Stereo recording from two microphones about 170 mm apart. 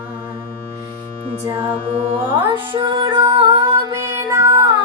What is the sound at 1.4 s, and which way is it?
Music, 30° right (ahead or behind).